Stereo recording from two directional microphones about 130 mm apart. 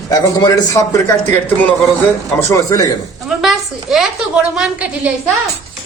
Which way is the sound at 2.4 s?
25° left (ahead or behind).